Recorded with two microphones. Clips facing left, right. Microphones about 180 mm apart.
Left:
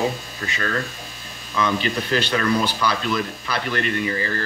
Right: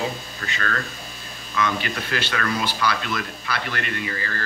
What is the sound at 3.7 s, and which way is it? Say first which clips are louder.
Speech: left 6 dB; 30° left (ahead or behind).